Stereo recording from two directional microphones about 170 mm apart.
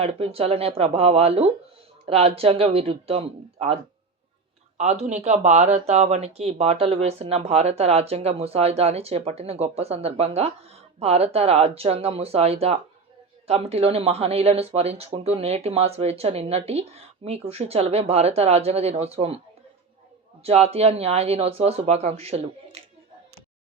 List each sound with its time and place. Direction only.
0.0 s speech: 35° right (ahead or behind)
4.8 s speech: 40° right (ahead or behind)
20.4 s speech: 35° right (ahead or behind)